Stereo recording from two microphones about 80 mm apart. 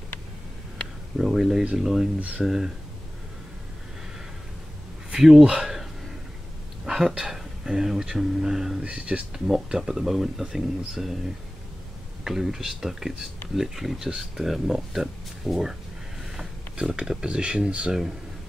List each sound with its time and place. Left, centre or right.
1.1 s speech: centre
2.1 s speech: centre
2.4 s speech: centre
5.1 s a sound: centre
6.9 s speech: centre
12.3 s speech: centre